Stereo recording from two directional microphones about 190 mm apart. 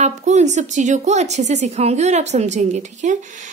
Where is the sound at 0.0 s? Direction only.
35° right (ahead or behind).